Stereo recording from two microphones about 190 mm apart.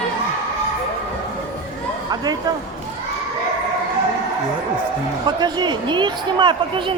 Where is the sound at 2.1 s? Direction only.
20° right (ahead or behind).